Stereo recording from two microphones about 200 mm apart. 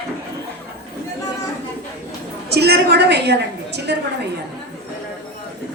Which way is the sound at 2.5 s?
55° right (ahead or behind).